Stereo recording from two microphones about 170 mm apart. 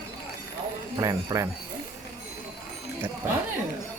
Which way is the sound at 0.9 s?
20° right (ahead or behind).